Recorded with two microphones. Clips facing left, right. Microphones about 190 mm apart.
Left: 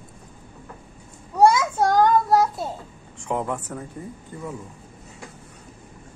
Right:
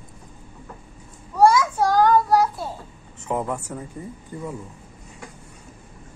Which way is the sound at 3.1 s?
5° right (ahead or behind).